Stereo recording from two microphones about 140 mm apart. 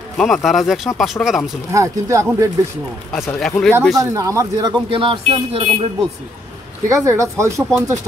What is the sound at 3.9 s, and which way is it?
Speech, 25° right (ahead or behind).